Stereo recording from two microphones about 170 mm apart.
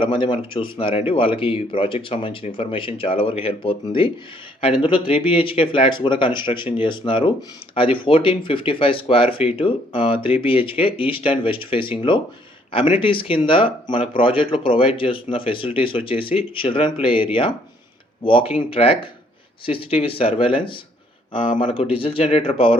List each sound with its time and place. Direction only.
0.0 s speech: 30° left (ahead or behind)